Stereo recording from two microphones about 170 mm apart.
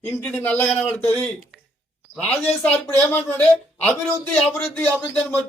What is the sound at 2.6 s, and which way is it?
Speech, 10° left (ahead or behind).